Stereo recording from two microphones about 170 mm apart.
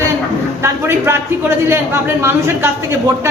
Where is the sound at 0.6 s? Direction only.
15° right (ahead or behind).